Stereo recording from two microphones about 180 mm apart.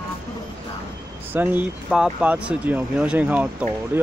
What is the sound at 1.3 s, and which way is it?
Speech, 10° right (ahead or behind).